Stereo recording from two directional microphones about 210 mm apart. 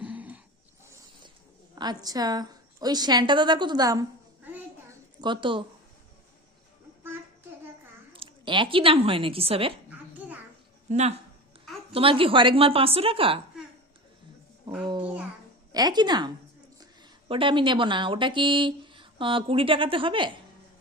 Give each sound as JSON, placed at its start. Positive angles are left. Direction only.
{"t": 0.0, "sound": "a sound", "side_deg": -5}
{"t": 1.7, "sound": "a woman's voice", "side_deg": -20}
{"t": 4.5, "sound": "a sound", "side_deg": -15}
{"t": 8.1, "sound": "a woman's voice", "side_deg": -25}
{"t": 10.8, "sound": "a woman's voice", "side_deg": -35}
{"t": 14.8, "sound": "a woman's voice", "side_deg": -20}